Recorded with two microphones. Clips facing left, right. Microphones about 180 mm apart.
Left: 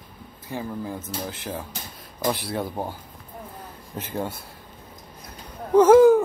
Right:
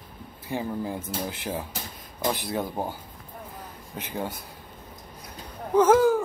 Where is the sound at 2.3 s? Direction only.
Centre (ahead or behind).